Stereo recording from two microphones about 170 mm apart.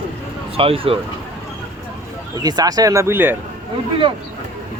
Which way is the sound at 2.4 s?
20° right (ahead or behind).